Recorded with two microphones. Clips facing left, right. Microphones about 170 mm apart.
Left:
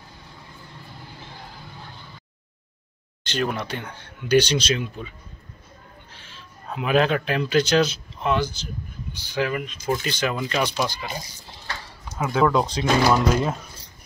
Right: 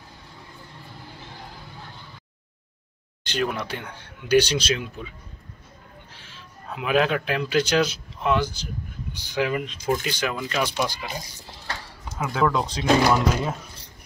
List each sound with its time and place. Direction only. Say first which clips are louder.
3.3 s speech: left 1 dB; 10° right (ahead or behind)
6.1 s speech: even; 5° right (ahead or behind)
12.2 s speech: left 3 dB; 5° left (ahead or behind)